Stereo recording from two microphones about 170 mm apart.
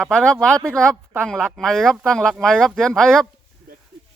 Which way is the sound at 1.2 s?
Centre (ahead or behind).